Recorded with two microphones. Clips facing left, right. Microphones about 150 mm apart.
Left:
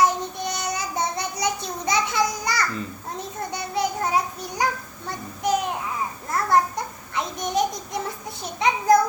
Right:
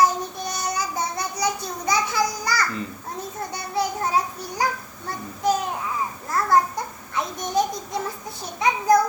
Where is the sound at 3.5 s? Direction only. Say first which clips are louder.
Even; 20° left (ahead or behind).